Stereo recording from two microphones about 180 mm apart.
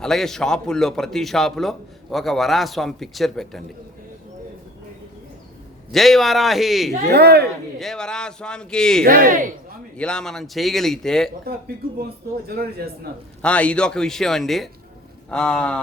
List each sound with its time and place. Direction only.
0.0 s a man's voice: centre (ahead or behind)
5.9 s a man's voice: centre (ahead or behind)
7.1 s a man's voice: 65° right (ahead or behind)
7.8 s a man's voice: 5° left (ahead or behind)
9.0 s speech: 50° right (ahead or behind)
10.0 s a man's voice: 5° left (ahead or behind)
12.5 s a man's voice: 60° right (ahead or behind)
13.4 s a man's voice: 5° left (ahead or behind)